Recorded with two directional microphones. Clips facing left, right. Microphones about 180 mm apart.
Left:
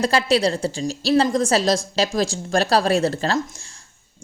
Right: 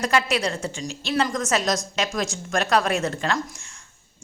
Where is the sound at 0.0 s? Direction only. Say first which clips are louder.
Left 4 dB; 30° left (ahead or behind).